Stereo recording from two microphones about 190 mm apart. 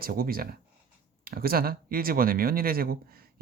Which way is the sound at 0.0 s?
50° right (ahead or behind).